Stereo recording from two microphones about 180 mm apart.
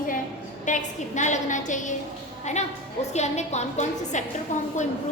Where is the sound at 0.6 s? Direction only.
45° left (ahead or behind).